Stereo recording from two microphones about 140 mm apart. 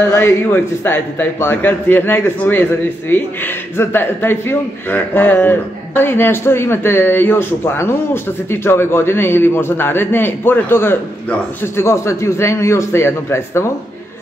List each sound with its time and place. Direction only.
0.0 s a man's voice: 20° left (ahead or behind)